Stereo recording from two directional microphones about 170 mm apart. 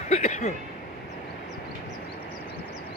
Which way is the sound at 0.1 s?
45° left (ahead or behind).